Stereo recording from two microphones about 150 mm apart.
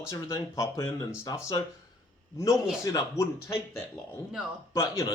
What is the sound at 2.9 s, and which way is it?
Speech, 20° left (ahead or behind).